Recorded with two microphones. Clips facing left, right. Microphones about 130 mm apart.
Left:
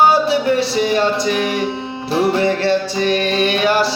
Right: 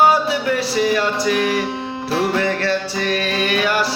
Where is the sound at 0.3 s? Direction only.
25° left (ahead or behind).